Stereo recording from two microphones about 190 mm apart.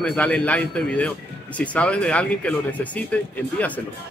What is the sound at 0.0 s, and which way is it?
A man's voice, 5° left (ahead or behind).